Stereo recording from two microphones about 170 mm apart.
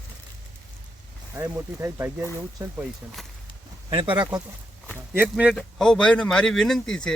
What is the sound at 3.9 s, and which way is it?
Speech, 30° right (ahead or behind).